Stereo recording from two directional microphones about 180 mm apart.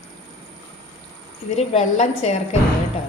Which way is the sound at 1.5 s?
35° left (ahead or behind).